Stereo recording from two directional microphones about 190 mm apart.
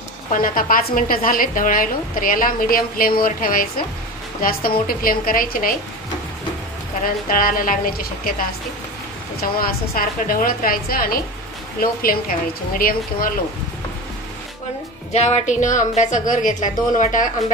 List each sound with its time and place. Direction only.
0.3 s a woman's voice: 45° left (ahead or behind)
7.0 s a woman's voice: 45° left (ahead or behind)
9.4 s a woman's voice: 50° left (ahead or behind)
15.1 s a woman's voice: 35° left (ahead or behind)